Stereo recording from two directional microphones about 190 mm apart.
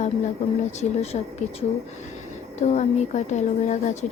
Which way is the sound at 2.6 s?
40° left (ahead or behind).